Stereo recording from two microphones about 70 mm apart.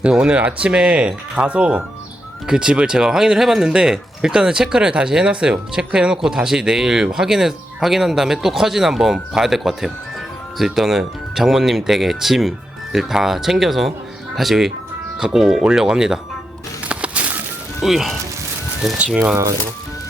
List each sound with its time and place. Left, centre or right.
0.0 s speech: centre
16.9 s a sound: centre
17.7 s speech: centre
18.9 s speech: centre